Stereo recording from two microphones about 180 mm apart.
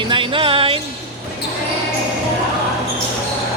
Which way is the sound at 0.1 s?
30° right (ahead or behind).